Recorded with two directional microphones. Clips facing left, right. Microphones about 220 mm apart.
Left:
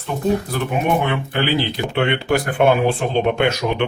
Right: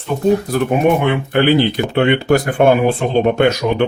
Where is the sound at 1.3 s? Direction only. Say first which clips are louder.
Right 7 dB; 55° right (ahead or behind).